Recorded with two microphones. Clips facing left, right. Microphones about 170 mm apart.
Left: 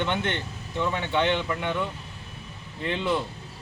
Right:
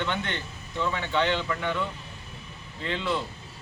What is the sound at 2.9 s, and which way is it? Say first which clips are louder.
Speech: left 3 dB; 15° left (ahead or behind).